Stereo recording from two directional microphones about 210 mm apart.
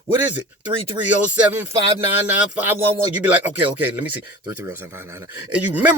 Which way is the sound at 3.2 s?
5° right (ahead or behind).